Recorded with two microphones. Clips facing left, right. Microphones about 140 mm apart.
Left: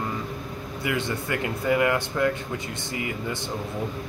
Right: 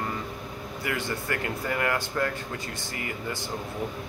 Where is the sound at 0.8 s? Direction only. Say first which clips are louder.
Left 3 dB; 20° left (ahead or behind).